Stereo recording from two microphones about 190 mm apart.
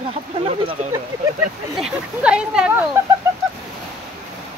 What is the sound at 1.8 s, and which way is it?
Speech, 5° right (ahead or behind).